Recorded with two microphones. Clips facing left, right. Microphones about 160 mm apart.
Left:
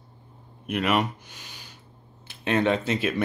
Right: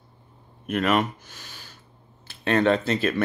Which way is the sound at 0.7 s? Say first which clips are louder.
Right 2 dB; 10° left (ahead or behind).